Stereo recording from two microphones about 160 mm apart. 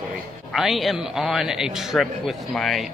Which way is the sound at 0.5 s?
Centre (ahead or behind).